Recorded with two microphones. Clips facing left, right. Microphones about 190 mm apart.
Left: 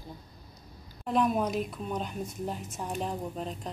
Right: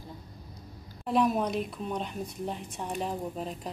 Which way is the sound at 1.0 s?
Centre (ahead or behind).